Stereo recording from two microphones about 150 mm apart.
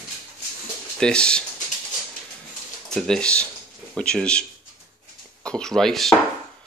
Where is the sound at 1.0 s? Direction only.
5° left (ahead or behind).